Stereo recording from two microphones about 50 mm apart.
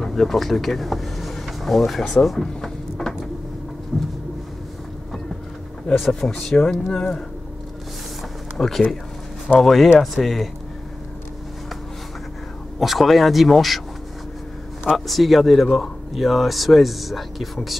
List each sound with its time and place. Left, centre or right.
0.0 s speech: centre
2.0 s drawer open or close: centre
3.9 s a man's voice: centre
6.5 s a man's voice: centre
8.5 s a man's voice: centre
12.7 s speech: centre
15.0 s speech: centre